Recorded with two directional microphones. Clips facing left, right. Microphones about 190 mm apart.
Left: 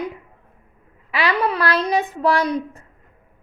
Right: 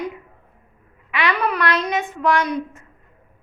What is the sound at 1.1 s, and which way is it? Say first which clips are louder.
A woman's voice: left 1 dB; 30° left (ahead or behind).